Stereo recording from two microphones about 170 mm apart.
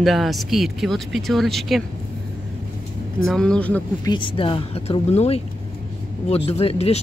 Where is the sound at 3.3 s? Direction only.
5° left (ahead or behind).